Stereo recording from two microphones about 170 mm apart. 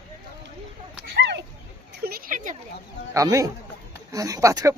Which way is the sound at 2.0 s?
60° right (ahead or behind).